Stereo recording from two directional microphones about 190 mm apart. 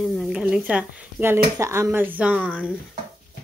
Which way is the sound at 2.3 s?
5° left (ahead or behind).